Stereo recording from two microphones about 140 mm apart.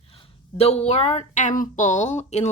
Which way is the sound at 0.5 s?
50° left (ahead or behind).